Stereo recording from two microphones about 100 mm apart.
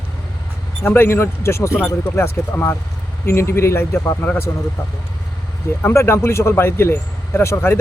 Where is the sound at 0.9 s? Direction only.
25° left (ahead or behind).